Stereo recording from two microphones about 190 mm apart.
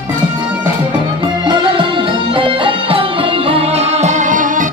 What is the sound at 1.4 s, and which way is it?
Music, 25° right (ahead or behind).